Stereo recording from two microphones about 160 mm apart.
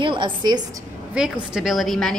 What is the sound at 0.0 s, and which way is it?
Speech, 30° right (ahead or behind).